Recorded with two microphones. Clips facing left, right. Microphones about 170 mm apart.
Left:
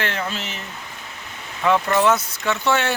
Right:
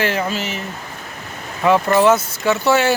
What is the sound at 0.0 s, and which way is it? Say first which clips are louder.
Speech: right 6 dB; 5° right (ahead or behind).